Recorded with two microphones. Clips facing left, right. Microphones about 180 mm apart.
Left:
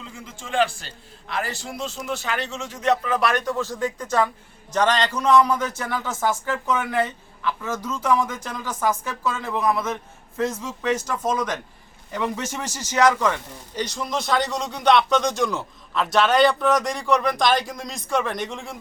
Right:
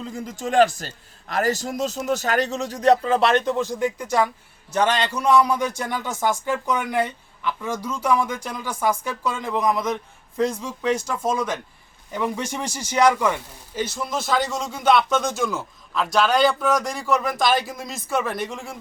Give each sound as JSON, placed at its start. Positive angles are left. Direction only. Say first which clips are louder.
{"t": 0.0, "sound": "a man's voice", "louder": "right 9 dB", "side_deg": -40}